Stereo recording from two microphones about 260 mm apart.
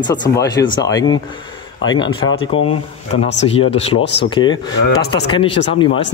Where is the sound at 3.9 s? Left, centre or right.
Left.